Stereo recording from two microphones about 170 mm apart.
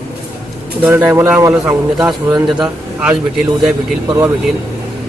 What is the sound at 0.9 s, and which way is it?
Speech, 15° right (ahead or behind).